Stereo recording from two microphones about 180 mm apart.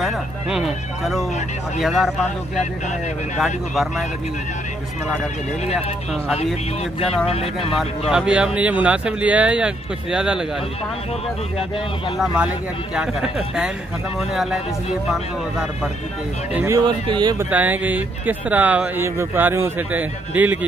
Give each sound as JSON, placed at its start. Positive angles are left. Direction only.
{"t": 0.0, "sound": "speech", "side_deg": -5}
{"t": 3.3, "sound": "speech", "side_deg": 0}
{"t": 6.8, "sound": "speech", "side_deg": 35}
{"t": 8.1, "sound": "speech", "side_deg": -5}
{"t": 12.9, "sound": "speech", "side_deg": -5}
{"t": 16.5, "sound": "speech", "side_deg": -15}
{"t": 17.5, "sound": "speech", "side_deg": -10}